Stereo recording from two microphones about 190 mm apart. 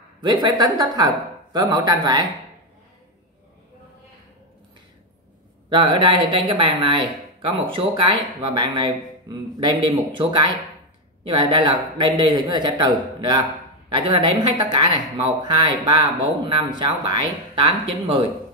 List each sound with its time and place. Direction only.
0.2 s speech: 25° right (ahead or behind)
5.7 s speech: 25° right (ahead or behind)